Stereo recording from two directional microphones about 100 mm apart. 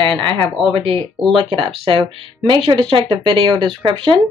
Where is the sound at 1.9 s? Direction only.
55° right (ahead or behind).